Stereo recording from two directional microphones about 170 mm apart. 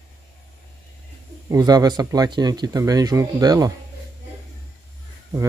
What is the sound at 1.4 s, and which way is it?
Speech, 20° right (ahead or behind).